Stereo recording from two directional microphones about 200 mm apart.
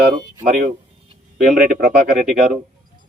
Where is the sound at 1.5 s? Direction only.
40° right (ahead or behind).